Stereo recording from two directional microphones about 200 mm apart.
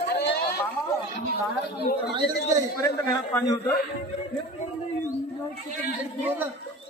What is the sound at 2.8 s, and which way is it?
Speech, 15° left (ahead or behind).